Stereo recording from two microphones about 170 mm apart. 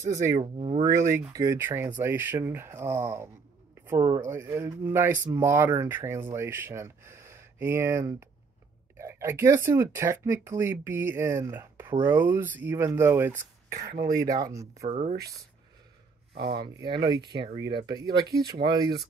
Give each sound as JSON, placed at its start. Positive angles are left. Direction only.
{"t": 0.1, "sound": "speech", "side_deg": -20}
{"t": 0.4, "sound": "speech", "side_deg": -35}
{"t": 0.8, "sound": "speech", "side_deg": -15}
{"t": 13.8, "sound": "speech", "side_deg": -65}
{"t": 14.3, "sound": "speech", "side_deg": -20}
{"t": 14.9, "sound": "speech", "side_deg": -35}
{"t": 16.3, "sound": "speech", "side_deg": -75}
{"t": 16.6, "sound": "speech", "side_deg": -25}